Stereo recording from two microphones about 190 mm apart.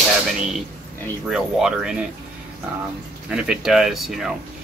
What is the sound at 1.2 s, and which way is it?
Speech, centre (ahead or behind).